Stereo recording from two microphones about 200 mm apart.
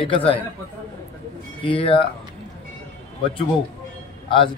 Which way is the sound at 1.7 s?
25° left (ahead or behind).